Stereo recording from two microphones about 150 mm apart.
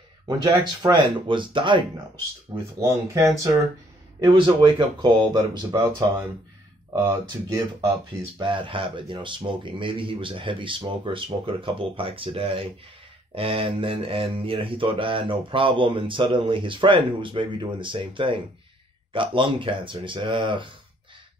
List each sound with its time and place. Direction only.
0.4 s speech: 25° right (ahead or behind)
2.8 s speech: 20° right (ahead or behind)
4.3 s speech: 35° right (ahead or behind)
8.4 s speech: 30° right (ahead or behind)